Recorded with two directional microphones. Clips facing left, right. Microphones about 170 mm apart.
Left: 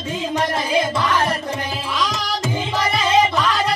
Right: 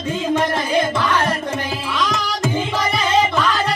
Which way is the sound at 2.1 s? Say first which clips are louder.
Right 2 dB; 50° right (ahead or behind).